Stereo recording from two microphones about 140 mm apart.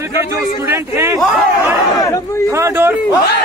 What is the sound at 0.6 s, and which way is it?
Speech, 20° right (ahead or behind).